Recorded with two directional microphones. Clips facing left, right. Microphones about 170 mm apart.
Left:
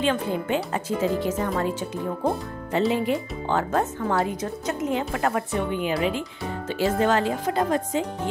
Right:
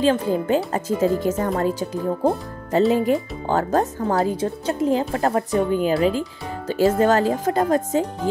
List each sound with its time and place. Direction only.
0.0 s speech: 35° right (ahead or behind)
2.9 s speech: 40° right (ahead or behind)